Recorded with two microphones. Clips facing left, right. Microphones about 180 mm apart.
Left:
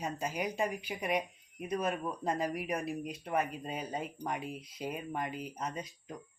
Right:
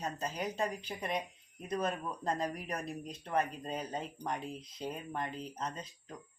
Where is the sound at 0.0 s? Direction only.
10° left (ahead or behind).